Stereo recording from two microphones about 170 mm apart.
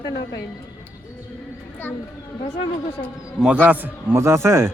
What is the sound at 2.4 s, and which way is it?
Speech, 35° left (ahead or behind).